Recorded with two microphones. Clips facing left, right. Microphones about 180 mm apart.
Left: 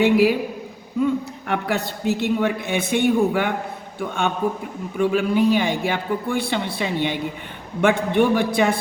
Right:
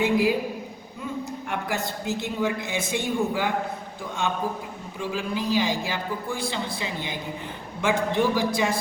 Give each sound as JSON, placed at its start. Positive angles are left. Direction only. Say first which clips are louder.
{"t": 0.0, "sound": "a man's voice", "louder": "left 5 dB", "side_deg": 70}